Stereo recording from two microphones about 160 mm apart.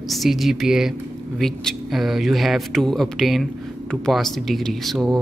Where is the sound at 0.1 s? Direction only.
Centre (ahead or behind).